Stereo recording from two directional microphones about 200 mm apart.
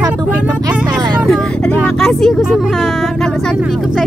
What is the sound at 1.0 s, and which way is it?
Speech, 20° right (ahead or behind).